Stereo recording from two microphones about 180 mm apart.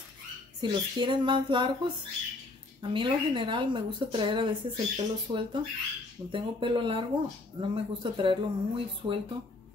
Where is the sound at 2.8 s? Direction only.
25° right (ahead or behind).